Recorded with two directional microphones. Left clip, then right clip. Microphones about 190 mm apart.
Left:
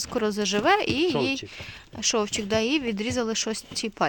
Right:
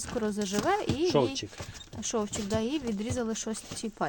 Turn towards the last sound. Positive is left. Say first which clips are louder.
# left 7 dB
turn(degrees=10)  # may be behind; listen again after turning